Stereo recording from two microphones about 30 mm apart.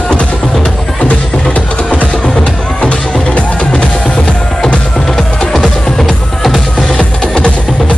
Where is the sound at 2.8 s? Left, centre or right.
Left.